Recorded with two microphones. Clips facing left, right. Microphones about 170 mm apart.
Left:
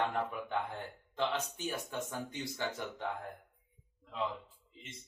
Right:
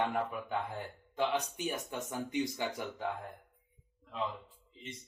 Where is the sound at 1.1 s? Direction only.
15° right (ahead or behind).